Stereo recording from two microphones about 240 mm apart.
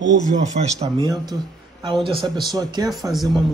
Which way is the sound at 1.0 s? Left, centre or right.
Centre.